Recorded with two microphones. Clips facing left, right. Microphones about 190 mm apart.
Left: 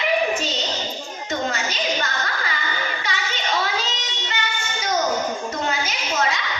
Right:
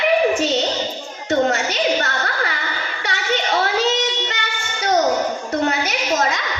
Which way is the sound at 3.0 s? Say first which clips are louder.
Right 9 dB; 65° right (ahead or behind).